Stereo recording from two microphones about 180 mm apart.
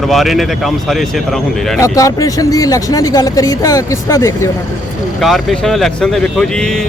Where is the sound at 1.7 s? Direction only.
15° left (ahead or behind).